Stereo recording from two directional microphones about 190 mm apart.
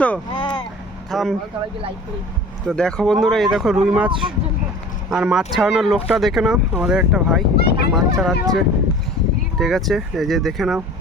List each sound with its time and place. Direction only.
0.3 s vehicle: 25° left (ahead or behind)
1.1 s speech: centre (ahead or behind)
2.6 s speech: 5° left (ahead or behind)
5.1 s speech: 5° right (ahead or behind)
7.5 s a sound: 55° left (ahead or behind)
7.9 s speech: centre (ahead or behind)